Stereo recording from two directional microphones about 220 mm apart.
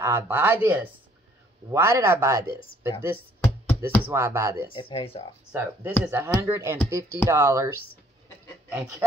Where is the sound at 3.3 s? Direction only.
10° left (ahead or behind).